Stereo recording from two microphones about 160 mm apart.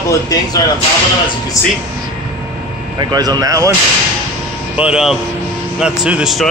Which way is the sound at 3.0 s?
25° right (ahead or behind).